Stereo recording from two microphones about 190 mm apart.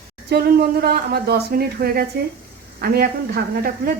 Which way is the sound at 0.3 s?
55° right (ahead or behind).